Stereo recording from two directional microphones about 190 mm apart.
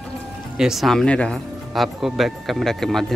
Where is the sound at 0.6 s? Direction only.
Centre (ahead or behind).